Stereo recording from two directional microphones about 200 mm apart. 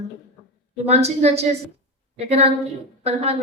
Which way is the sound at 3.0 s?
30° right (ahead or behind).